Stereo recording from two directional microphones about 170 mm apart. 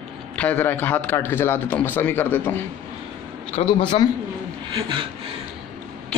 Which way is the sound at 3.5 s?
30° left (ahead or behind).